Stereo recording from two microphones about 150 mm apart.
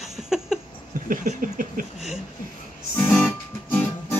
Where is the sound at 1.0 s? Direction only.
65° right (ahead or behind).